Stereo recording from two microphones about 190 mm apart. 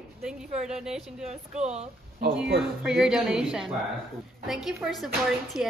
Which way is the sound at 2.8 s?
5° right (ahead or behind).